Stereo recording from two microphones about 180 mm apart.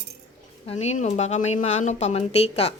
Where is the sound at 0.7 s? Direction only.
40° left (ahead or behind).